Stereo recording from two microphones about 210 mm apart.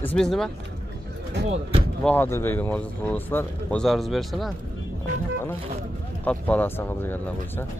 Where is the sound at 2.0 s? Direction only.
10° left (ahead or behind).